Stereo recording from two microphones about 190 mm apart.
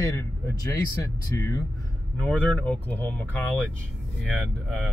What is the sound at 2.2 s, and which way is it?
Speech, 10° left (ahead or behind).